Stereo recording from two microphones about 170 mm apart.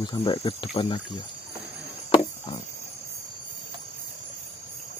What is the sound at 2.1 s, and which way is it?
Cricket, 30° left (ahead or behind).